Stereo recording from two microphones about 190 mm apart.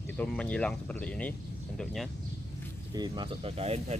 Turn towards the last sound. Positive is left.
turn(degrees=-30)  # may be behind; listen again after turning